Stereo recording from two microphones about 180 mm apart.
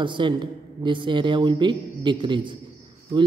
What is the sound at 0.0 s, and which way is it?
Speech, 25° right (ahead or behind).